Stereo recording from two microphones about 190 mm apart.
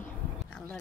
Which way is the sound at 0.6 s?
5° left (ahead or behind).